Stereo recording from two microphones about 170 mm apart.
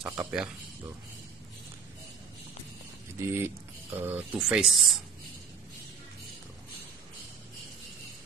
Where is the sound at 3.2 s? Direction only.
15° right (ahead or behind).